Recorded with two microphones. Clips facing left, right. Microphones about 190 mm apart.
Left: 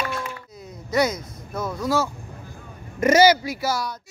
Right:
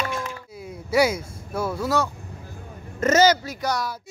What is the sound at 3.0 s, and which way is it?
Speech, 10° left (ahead or behind).